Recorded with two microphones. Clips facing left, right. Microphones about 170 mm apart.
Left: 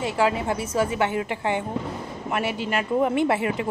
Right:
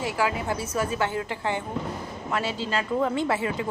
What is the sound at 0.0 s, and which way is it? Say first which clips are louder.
Speech: left 4 dB; 25° left (ahead or behind).